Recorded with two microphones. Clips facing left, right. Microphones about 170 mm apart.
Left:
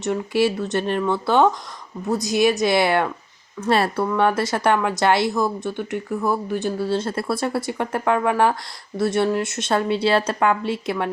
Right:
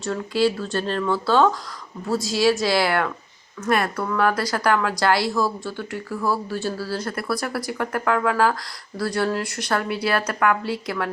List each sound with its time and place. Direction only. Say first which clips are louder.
0.0 s speech: left 1 dB; 20° left (ahead or behind)